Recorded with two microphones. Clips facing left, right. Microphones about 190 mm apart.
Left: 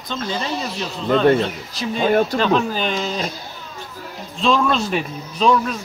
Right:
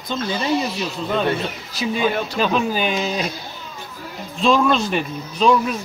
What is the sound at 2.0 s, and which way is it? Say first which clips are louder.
Speech: left 6 dB; 50° left (ahead or behind).